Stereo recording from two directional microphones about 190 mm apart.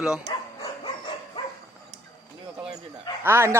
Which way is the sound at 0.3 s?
20° left (ahead or behind).